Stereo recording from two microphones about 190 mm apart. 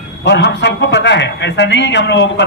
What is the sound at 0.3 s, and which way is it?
A man's voice, 65° left (ahead or behind).